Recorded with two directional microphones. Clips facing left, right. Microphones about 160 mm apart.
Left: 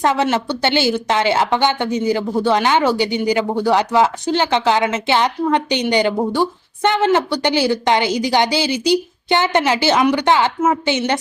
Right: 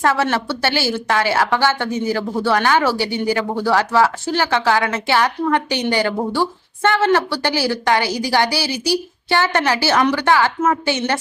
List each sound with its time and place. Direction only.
0.0 s a woman's voice: 20° left (ahead or behind)